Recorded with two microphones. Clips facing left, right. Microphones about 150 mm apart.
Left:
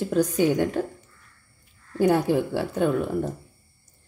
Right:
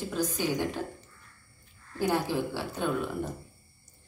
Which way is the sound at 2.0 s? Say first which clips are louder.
Left 8 dB; 60° left (ahead or behind).